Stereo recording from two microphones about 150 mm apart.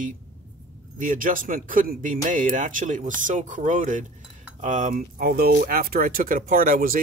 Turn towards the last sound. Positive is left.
turn(degrees=-70)  # may be behind; listen again after turning